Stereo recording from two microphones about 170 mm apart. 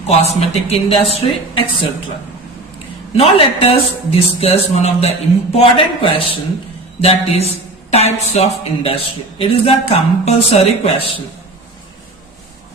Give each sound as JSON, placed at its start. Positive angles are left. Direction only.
{"t": 0.1, "sound": "a man's voice", "side_deg": 40}
{"t": 3.2, "sound": "a man's voice", "side_deg": 35}